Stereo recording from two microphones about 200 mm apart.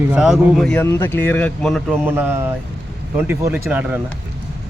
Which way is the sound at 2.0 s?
10° right (ahead or behind).